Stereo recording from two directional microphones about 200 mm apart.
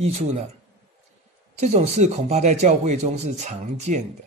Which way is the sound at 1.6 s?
35° right (ahead or behind).